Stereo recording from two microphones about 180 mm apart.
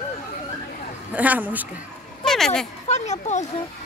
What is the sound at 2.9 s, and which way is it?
Speech, 40° left (ahead or behind).